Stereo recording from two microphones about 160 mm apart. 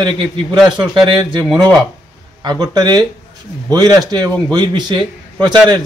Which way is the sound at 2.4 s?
25° right (ahead or behind).